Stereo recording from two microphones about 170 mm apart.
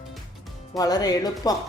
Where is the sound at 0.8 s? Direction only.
20° left (ahead or behind).